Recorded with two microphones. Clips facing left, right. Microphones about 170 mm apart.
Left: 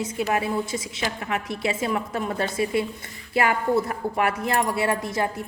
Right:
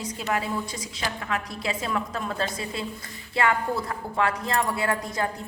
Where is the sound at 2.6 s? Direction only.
30° right (ahead or behind).